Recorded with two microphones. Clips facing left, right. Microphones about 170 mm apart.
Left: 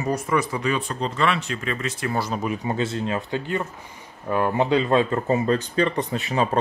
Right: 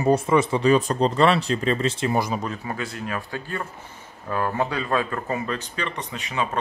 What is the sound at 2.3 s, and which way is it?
Speech, 15° left (ahead or behind).